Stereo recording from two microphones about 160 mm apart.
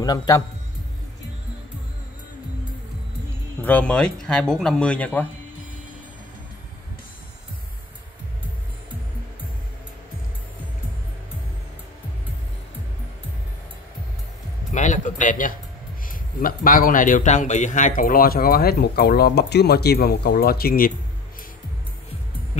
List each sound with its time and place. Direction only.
0.0 s a man's voice: 25° left (ahead or behind)
3.6 s speech: 10° left (ahead or behind)
14.7 s a sound: 50° left (ahead or behind)
16.1 s a man's voice: 60° left (ahead or behind)